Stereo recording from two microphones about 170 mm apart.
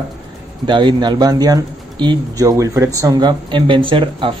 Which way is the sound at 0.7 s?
30° right (ahead or behind).